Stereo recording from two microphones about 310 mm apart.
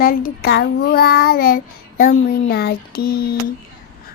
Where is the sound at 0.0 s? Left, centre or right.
Left.